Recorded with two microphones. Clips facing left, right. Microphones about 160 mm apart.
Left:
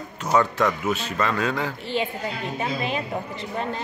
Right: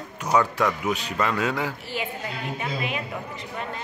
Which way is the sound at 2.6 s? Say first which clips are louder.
Left 4 dB; 30° left (ahead or behind).